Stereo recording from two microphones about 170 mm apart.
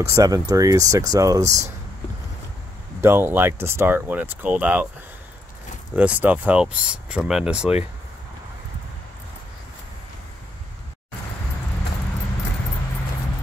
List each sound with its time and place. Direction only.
0.0 s speech: 20° right (ahead or behind)
3.0 s speech: 15° right (ahead or behind)
5.9 s speech: 10° right (ahead or behind)